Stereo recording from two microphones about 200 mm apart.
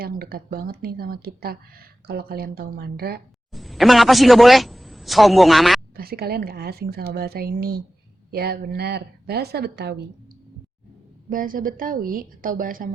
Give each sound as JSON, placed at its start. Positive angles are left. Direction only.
{"t": 0.0, "sound": "speech", "side_deg": -50}
{"t": 3.5, "sound": "speech", "side_deg": 0}
{"t": 6.0, "sound": "speech", "side_deg": -50}
{"t": 11.3, "sound": "speech", "side_deg": -45}